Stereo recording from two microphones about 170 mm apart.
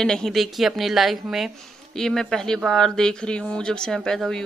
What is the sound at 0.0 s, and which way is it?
Speech, 5° left (ahead or behind).